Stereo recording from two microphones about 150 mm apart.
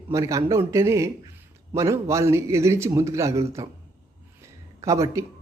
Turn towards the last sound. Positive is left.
turn(degrees=-20)  # may be behind; listen again after turning